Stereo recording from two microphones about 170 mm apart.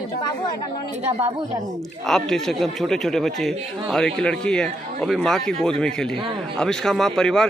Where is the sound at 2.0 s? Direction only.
Centre (ahead or behind).